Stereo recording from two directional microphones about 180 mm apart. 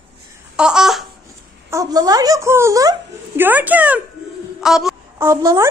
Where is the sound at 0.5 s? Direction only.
5° right (ahead or behind).